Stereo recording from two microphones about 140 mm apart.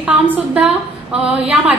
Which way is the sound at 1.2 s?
10° right (ahead or behind).